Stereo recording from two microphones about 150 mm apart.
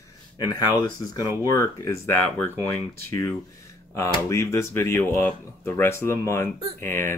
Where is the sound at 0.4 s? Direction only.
25° left (ahead or behind).